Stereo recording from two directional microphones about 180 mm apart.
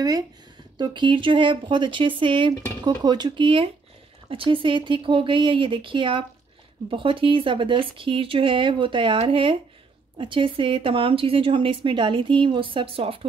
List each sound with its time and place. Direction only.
0.7 s speech: 25° right (ahead or behind)